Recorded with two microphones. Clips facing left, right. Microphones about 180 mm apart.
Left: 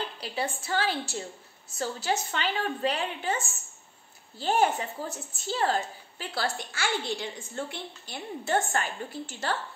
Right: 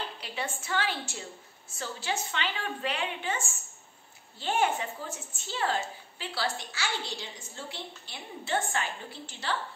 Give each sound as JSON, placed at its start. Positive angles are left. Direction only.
{"t": 0.2, "sound": "a woman's voice", "side_deg": 35}